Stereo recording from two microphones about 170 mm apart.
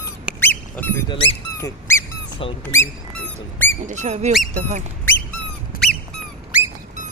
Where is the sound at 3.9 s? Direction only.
45° right (ahead or behind).